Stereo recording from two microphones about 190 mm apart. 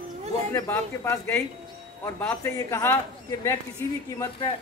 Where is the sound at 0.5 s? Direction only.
15° left (ahead or behind).